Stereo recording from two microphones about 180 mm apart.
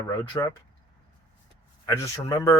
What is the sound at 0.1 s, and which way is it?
Speech, 20° left (ahead or behind).